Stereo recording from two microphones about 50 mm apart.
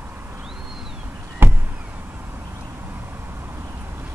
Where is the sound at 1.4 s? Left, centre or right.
Right.